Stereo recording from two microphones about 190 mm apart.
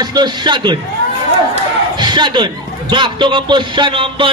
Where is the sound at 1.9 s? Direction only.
25° right (ahead or behind).